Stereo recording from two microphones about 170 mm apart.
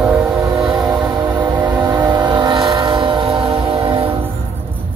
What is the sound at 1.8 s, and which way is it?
Train, 20° right (ahead or behind).